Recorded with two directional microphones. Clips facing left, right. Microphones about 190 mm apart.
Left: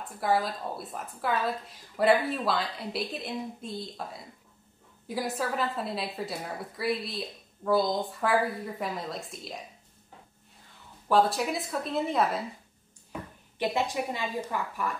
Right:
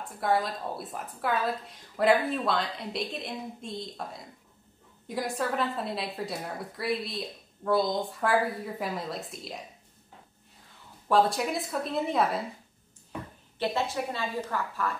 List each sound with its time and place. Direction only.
0.0 s speech: centre (ahead or behind)
11.1 s speech: centre (ahead or behind)
13.6 s a woman's voice: 15° left (ahead or behind)